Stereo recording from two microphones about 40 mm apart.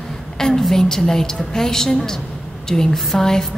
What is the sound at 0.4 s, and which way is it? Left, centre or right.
A woman's voice, centre.